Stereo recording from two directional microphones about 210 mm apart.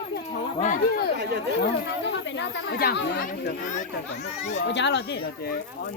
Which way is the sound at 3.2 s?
40° left (ahead or behind).